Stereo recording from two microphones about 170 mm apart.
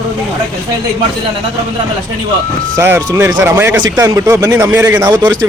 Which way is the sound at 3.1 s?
20° right (ahead or behind).